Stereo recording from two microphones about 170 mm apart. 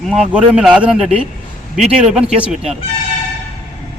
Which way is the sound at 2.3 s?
5° right (ahead or behind).